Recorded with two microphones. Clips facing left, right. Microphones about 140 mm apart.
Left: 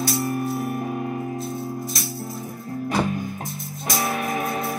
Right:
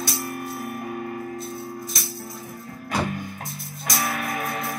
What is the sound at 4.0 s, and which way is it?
Music, 25° left (ahead or behind).